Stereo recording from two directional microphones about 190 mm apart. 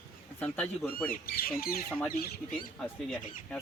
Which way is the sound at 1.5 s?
50° left (ahead or behind).